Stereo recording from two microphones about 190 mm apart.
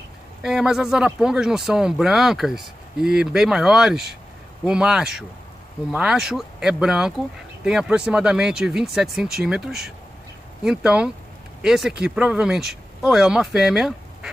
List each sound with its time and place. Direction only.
0.4 s speech: 5° right (ahead or behind)